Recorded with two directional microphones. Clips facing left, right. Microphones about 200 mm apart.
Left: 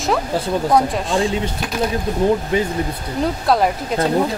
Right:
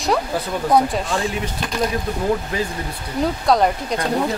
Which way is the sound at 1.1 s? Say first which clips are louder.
Left 4 dB; 25° left (ahead or behind).